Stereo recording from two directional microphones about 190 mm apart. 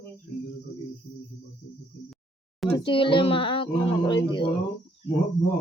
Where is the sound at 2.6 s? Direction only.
25° left (ahead or behind).